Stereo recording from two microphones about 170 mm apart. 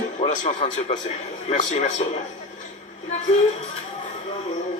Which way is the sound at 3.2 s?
35° left (ahead or behind).